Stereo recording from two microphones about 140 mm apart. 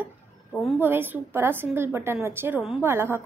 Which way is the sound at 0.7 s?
15° right (ahead or behind).